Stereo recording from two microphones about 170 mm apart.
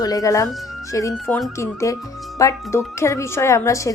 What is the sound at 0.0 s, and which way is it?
A woman's voice, 20° left (ahead or behind).